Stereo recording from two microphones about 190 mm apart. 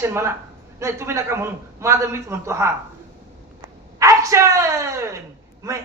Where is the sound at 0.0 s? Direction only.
15° right (ahead or behind).